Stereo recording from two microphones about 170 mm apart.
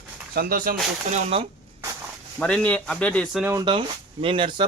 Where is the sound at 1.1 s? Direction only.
40° right (ahead or behind).